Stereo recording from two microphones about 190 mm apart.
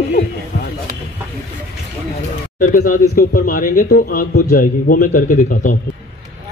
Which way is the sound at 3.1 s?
50° left (ahead or behind).